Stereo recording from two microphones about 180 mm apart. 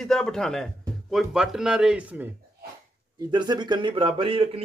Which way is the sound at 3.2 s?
25° right (ahead or behind).